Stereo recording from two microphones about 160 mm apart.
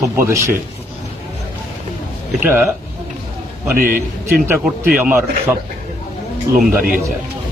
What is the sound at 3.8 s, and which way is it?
Speech, 60° right (ahead or behind).